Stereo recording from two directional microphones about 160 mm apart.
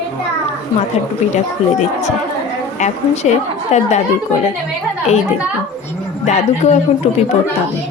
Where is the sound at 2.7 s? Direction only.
45° left (ahead or behind).